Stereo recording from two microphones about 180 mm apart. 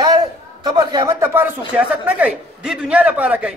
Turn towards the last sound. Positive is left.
turn(degrees=-5)  # may be behind; listen again after turning